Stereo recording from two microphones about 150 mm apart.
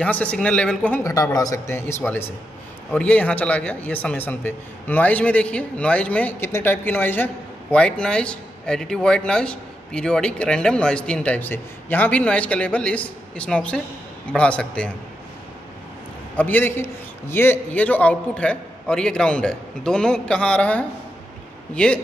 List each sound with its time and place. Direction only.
0.0 s speech: 10° left (ahead or behind)
1.0 s speech: 25° left (ahead or behind); by 14.9 s 5° left (ahead or behind)
16.3 s speech: 10° left (ahead or behind)